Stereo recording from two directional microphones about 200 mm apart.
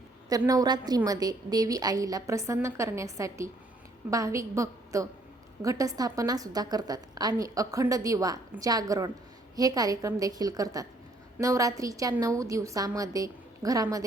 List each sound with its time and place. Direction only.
0.3 s a woman's voice: 20° right (ahead or behind)